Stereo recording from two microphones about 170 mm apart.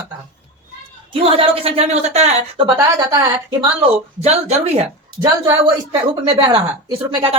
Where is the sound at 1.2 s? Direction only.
35° right (ahead or behind).